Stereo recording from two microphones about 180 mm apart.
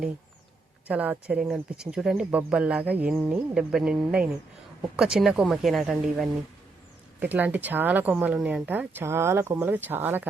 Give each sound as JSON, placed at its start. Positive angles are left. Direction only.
{"t": 0.9, "sound": "speech", "side_deg": -10}
{"t": 4.9, "sound": "speech", "side_deg": 0}